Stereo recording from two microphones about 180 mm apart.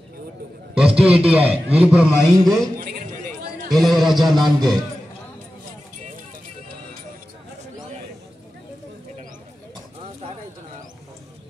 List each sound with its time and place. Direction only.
0.7 s a man's voice: 5° right (ahead or behind)
2.8 s a sound: 50° right (ahead or behind)
3.7 s a man's voice: centre (ahead or behind)